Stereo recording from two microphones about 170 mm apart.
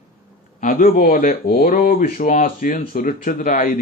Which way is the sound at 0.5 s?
55° left (ahead or behind).